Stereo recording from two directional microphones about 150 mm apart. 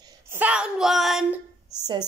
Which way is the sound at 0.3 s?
10° right (ahead or behind).